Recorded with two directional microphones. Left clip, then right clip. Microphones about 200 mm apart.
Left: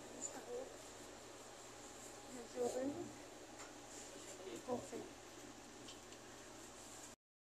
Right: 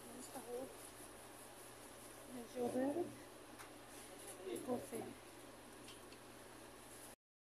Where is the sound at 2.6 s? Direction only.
20° right (ahead or behind).